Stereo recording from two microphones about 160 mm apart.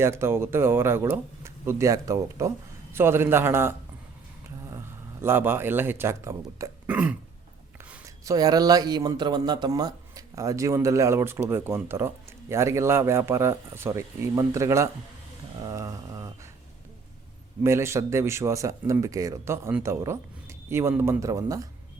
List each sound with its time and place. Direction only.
0.0 s speech: 15° right (ahead or behind)
5.2 s speech: 15° right (ahead or behind)
8.0 s speech: 20° right (ahead or behind)
15.6 s a sound: 20° right (ahead or behind)
17.6 s speech: 15° right (ahead or behind)